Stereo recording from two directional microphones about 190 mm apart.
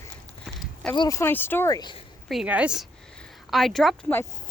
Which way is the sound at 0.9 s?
20° left (ahead or behind).